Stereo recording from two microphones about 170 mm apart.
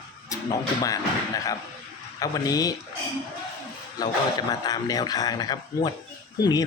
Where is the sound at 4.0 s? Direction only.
20° left (ahead or behind).